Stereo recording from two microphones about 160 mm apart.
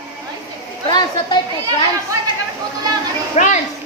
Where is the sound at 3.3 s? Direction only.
45° left (ahead or behind).